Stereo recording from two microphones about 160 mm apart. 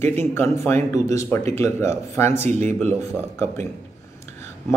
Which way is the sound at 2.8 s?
15° left (ahead or behind).